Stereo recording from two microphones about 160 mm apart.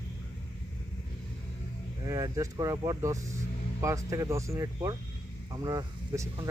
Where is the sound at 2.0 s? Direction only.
20° right (ahead or behind).